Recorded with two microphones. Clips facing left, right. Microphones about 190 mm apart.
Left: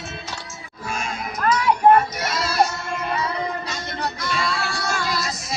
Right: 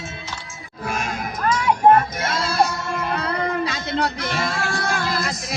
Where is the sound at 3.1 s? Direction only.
65° right (ahead or behind).